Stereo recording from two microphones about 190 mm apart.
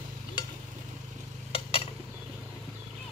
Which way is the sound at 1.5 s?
30° left (ahead or behind).